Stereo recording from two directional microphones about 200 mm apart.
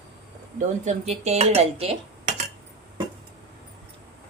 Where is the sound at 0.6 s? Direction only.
35° right (ahead or behind).